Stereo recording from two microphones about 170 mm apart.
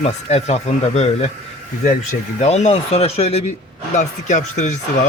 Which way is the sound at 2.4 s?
40° left (ahead or behind).